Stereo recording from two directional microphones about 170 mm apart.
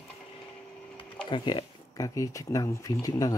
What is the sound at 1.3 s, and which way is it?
Speech, 25° left (ahead or behind).